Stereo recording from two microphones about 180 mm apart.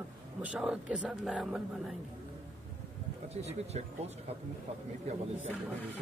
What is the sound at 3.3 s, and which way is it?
Speech, 35° right (ahead or behind).